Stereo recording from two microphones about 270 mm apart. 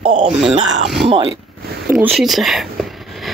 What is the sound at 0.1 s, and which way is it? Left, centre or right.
Speech, right.